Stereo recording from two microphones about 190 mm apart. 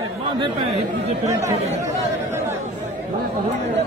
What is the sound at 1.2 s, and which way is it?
Speech, 15° right (ahead or behind).